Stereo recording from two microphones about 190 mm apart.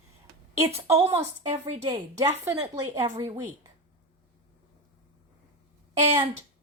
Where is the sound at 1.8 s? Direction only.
30° right (ahead or behind).